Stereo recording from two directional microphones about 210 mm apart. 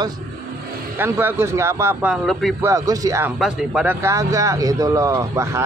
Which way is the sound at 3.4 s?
5° right (ahead or behind).